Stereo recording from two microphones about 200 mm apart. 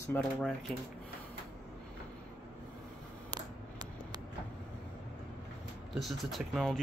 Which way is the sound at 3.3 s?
20° right (ahead or behind).